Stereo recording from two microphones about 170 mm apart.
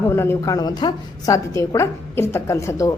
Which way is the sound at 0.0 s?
15° left (ahead or behind).